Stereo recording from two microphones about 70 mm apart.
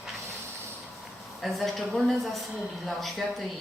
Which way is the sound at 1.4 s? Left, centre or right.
Centre.